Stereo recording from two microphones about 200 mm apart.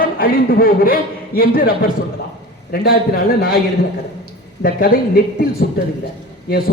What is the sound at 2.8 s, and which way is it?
Speech, 50° left (ahead or behind).